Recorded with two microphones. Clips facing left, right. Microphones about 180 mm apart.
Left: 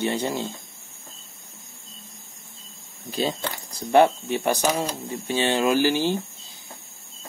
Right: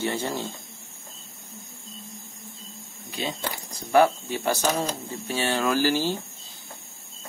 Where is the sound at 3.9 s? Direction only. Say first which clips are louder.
Left 2 dB; 25° left (ahead or behind).